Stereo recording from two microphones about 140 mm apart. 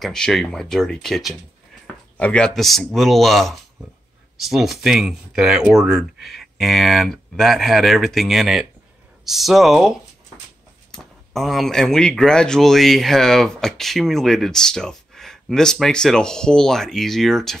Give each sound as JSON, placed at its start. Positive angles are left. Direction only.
{"t": 0.0, "sound": "speech", "side_deg": 5}